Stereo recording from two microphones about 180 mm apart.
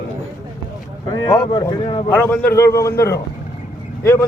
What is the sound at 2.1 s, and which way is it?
Speech, 10° left (ahead or behind).